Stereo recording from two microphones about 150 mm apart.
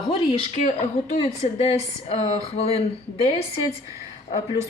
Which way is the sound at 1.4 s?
40° left (ahead or behind).